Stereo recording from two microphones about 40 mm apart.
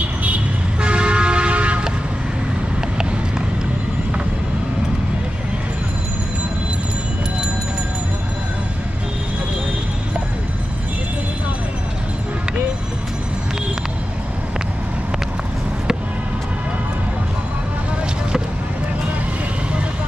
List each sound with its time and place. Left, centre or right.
0.7 s vehicle: right